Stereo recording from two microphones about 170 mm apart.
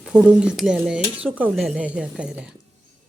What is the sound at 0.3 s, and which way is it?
Speech, 5° right (ahead or behind).